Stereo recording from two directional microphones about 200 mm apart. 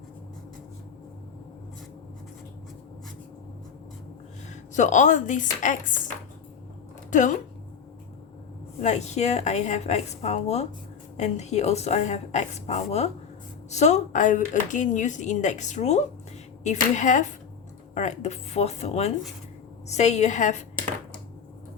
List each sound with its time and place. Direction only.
4.7 s speech: 40° left (ahead or behind)
7.1 s speech: 40° left (ahead or behind)
8.8 s speech: 35° left (ahead or behind)